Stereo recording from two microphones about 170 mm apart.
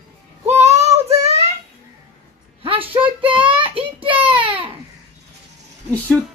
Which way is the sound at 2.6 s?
30° right (ahead or behind).